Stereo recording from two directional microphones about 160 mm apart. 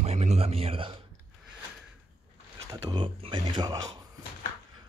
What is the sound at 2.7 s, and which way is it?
Speech, 30° right (ahead or behind).